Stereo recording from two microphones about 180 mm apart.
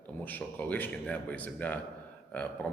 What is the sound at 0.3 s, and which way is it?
A man's voice, 10° left (ahead or behind).